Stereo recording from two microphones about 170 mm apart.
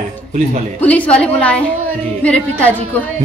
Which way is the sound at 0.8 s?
10° left (ahead or behind).